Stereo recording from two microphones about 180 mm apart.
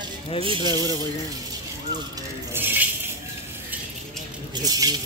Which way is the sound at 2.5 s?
10° right (ahead or behind).